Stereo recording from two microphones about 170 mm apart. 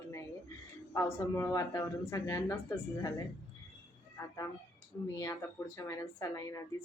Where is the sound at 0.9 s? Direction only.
15° left (ahead or behind).